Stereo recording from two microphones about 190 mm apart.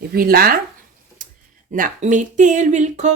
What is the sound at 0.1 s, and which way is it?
Speech, 50° right (ahead or behind).